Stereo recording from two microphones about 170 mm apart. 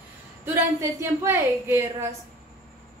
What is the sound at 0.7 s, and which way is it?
A woman's voice, 15° right (ahead or behind).